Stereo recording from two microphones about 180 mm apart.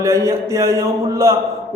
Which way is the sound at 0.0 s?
15° right (ahead or behind).